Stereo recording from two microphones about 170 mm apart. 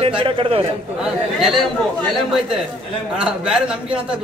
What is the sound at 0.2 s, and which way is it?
Speech, 30° right (ahead or behind).